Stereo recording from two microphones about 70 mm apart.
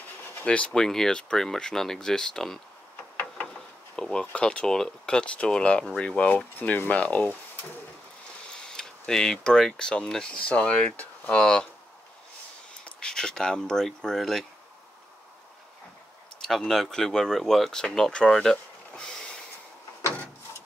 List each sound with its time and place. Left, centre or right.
0.2 s a sound: left
0.5 s speech: centre
8.5 s speech: centre
12.8 s speech: centre
16.3 s speech: centre